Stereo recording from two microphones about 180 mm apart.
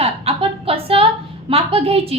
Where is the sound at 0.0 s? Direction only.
30° right (ahead or behind).